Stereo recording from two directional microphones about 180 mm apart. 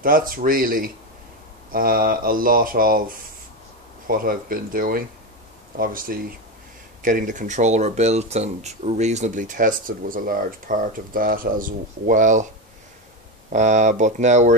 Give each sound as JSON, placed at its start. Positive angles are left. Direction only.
{"t": 0.0, "sound": "speech", "side_deg": -50}
{"t": 13.5, "sound": "speech", "side_deg": -40}